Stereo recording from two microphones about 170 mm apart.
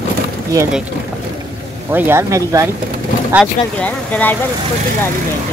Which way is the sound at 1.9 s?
10° right (ahead or behind).